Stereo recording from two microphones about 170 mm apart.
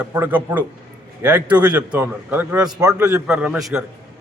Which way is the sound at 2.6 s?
20° right (ahead or behind).